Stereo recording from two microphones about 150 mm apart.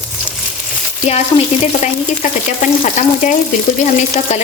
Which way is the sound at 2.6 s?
60° left (ahead or behind).